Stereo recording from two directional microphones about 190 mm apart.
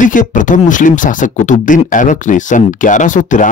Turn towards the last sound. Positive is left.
turn(degrees=40)  # may be behind; listen again after turning